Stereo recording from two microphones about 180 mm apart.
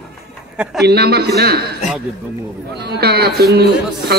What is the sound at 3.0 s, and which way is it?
Speech, 60° right (ahead or behind).